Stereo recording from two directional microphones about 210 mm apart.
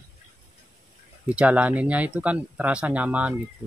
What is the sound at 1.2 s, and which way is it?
Speech, 5° right (ahead or behind).